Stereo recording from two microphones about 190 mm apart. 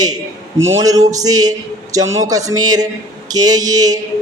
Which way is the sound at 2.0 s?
90° right.